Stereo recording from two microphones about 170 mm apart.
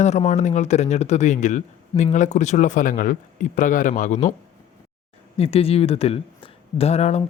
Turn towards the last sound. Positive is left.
turn(degrees=40)  # may be behind; listen again after turning